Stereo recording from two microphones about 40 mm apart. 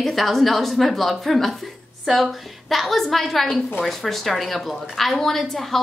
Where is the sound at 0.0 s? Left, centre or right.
Centre.